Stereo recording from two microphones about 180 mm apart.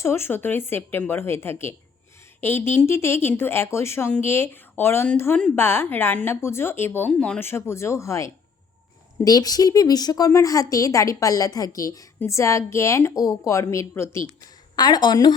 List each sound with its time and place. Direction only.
0.0 s speech: 15° left (ahead or behind)